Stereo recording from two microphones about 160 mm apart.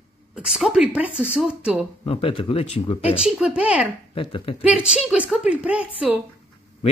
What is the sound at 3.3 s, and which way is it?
Speech, 5° right (ahead or behind).